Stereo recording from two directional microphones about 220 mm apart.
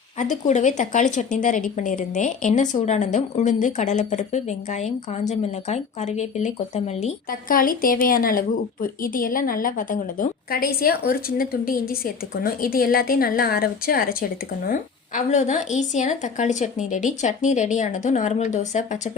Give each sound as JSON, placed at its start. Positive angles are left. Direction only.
{"t": 0.2, "sound": "speech", "side_deg": 35}